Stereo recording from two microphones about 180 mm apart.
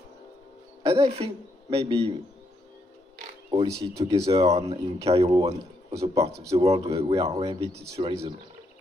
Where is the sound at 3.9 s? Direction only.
35° right (ahead or behind).